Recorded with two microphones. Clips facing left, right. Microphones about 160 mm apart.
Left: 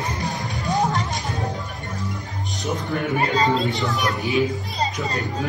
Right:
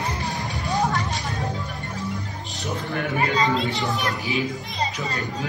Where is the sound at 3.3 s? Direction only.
35° left (ahead or behind).